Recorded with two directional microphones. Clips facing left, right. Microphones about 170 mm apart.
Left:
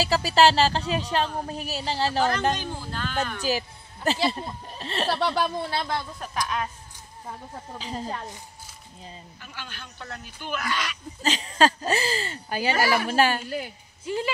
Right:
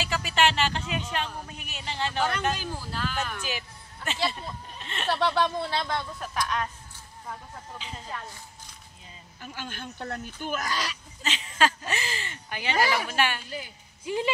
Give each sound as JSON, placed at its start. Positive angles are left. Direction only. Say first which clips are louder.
{"t": 0.0, "sound": "speech", "louder": "left 6 dB", "side_deg": 35}
{"t": 2.5, "sound": "speech", "louder": "left 2 dB", "side_deg": -5}
{"t": 3.3, "sound": "speech", "louder": "left 8 dB", "side_deg": 35}
{"t": 5.2, "sound": "speech", "louder": "even", "side_deg": 10}
{"t": 7.8, "sound": "speech", "louder": "left 8 dB", "side_deg": 35}
{"t": 9.4, "sound": "speech", "louder": "right 6 dB", "side_deg": -45}
{"t": 11.2, "sound": "speech", "louder": "left 4 dB", "side_deg": 40}
{"t": 14.0, "sound": "speech", "louder": "even", "side_deg": -15}